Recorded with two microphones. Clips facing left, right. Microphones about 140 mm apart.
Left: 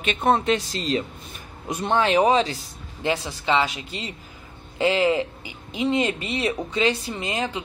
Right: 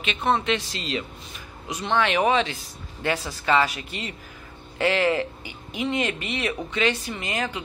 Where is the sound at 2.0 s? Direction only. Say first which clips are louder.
Left 3 dB; 35° left (ahead or behind).